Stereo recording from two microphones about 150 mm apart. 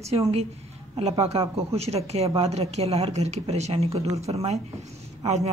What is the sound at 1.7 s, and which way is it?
A woman's voice, 45° right (ahead or behind).